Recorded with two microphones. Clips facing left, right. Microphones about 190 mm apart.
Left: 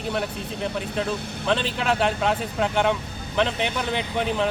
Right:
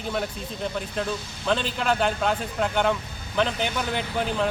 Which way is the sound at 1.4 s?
Centre (ahead or behind).